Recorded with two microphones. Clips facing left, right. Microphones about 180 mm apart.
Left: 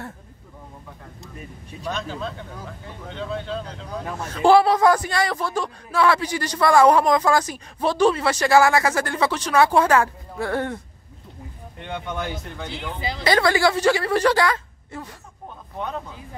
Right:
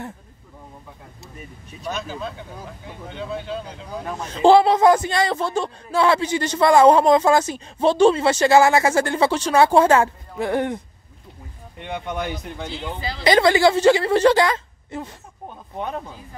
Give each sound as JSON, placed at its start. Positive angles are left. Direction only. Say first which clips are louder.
{"t": 1.9, "sound": "speech", "louder": "even", "side_deg": -5}
{"t": 4.3, "sound": "speech", "louder": "right 2 dB", "side_deg": -25}
{"t": 11.8, "sound": "speech", "louder": "right 2 dB", "side_deg": -15}